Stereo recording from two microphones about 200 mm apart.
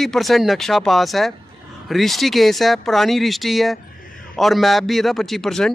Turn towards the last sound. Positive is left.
turn(degrees=0)  # may be behind; listen again after turning